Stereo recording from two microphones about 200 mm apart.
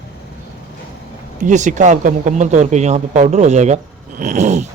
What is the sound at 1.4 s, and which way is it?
Speech, 40° right (ahead or behind).